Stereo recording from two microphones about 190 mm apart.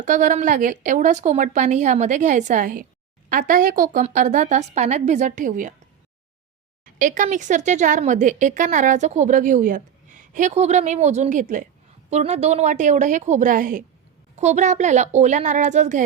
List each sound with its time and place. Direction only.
0.0 s a woman's voice: 40° right (ahead or behind)
7.0 s a woman's voice: 45° right (ahead or behind)